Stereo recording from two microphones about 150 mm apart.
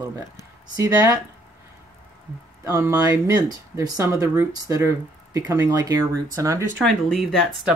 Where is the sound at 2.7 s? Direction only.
20° right (ahead or behind).